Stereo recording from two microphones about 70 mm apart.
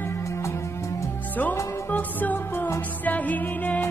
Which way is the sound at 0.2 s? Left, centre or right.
Left.